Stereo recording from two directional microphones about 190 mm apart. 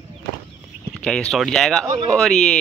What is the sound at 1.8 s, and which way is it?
Speech, 25° right (ahead or behind).